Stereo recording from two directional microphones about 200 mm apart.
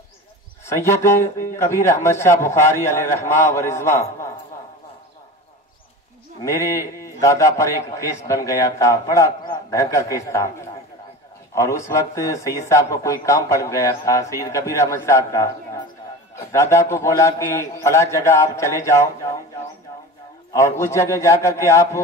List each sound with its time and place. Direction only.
0.7 s a man's voice: 15° left (ahead or behind)
7.0 s a man's voice: 15° left (ahead or behind)
11.5 s a man's voice: 15° left (ahead or behind)
20.5 s a man's voice: 15° left (ahead or behind)